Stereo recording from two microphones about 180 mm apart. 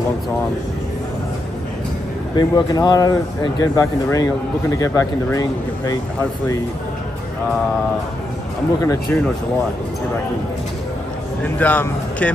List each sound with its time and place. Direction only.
2.3 s speech: 20° left (ahead or behind)
8.8 s speech: 20° left (ahead or behind)
11.4 s speech: 10° left (ahead or behind)